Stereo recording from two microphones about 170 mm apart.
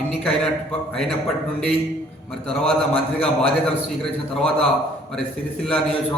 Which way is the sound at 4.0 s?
5° left (ahead or behind).